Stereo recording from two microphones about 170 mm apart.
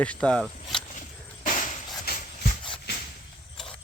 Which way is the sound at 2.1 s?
65° left (ahead or behind).